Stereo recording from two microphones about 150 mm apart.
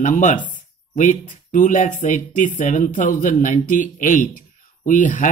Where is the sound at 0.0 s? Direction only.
60° left (ahead or behind).